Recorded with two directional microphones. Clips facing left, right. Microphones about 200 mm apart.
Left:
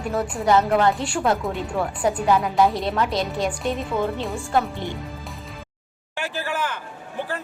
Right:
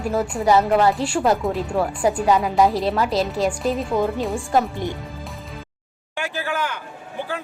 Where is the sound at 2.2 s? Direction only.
15° right (ahead or behind).